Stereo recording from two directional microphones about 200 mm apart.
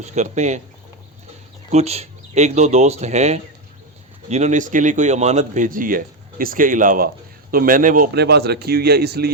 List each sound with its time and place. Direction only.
0.0 s speech: 35° right (ahead or behind)
1.7 s speech: 30° right (ahead or behind); by 9.3 s 50° right (ahead or behind)